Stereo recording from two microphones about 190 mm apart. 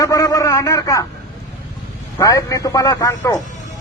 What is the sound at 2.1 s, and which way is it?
A man's voice, 15° left (ahead or behind).